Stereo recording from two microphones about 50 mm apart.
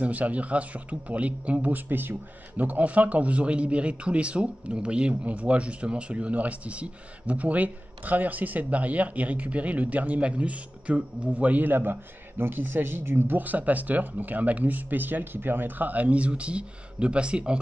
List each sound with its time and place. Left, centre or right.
0.0 s speech: right